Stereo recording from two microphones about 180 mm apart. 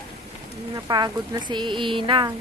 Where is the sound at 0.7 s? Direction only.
20° right (ahead or behind).